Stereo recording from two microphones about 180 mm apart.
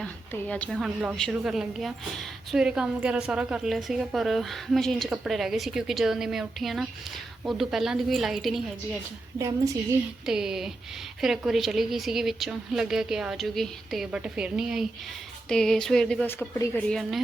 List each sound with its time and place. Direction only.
0.0 s a woman's voice: 5° left (ahead or behind)
9.4 s a woman's voice: 15° right (ahead or behind)
10.2 s a woman's voice: 5° right (ahead or behind); by 16.8 s 15° left (ahead or behind)
16.9 s a woman's voice: centre (ahead or behind)